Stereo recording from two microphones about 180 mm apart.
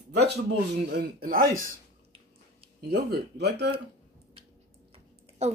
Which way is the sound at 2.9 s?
65° right (ahead or behind).